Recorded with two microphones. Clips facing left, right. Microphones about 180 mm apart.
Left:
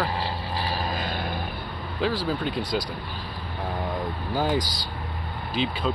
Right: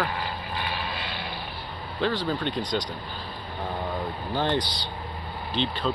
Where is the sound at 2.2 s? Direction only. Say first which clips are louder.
Left 1 dB; 5° left (ahead or behind).